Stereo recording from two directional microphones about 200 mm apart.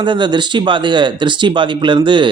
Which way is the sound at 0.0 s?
25° right (ahead or behind).